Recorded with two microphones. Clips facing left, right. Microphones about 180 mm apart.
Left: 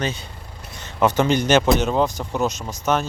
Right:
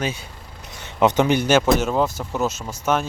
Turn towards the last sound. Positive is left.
turn(degrees=-10)  # may be behind; listen again after turning